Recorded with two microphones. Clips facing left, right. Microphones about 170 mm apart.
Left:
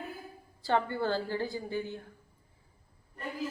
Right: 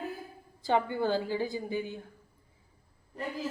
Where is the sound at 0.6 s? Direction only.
15° right (ahead or behind).